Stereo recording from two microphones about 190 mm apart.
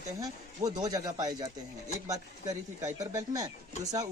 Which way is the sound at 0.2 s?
20° right (ahead or behind).